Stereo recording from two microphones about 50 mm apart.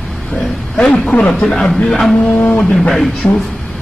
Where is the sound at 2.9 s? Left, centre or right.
Centre.